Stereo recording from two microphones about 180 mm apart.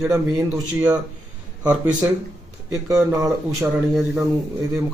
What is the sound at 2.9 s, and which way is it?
Speech, 15° right (ahead or behind).